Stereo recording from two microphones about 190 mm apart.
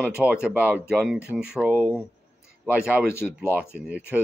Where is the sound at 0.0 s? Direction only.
5° right (ahead or behind).